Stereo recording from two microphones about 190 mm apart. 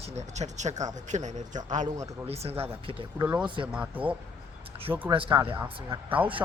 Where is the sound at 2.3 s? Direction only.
30° right (ahead or behind).